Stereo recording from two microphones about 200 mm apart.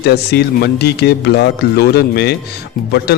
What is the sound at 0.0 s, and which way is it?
A man's voice, 55° left (ahead or behind).